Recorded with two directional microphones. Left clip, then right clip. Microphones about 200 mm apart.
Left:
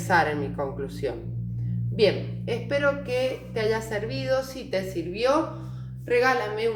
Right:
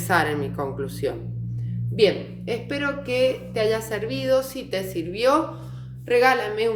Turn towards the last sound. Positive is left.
turn(degrees=-35)  # may be behind; listen again after turning